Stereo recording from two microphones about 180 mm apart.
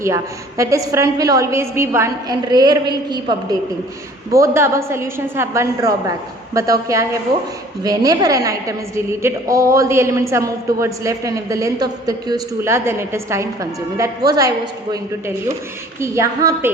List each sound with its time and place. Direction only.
0.0 s a man's voice: 15° right (ahead or behind)
16.0 s a man's voice: 15° right (ahead or behind)